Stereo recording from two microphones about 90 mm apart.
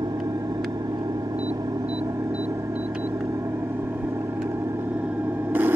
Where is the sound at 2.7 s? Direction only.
10° right (ahead or behind).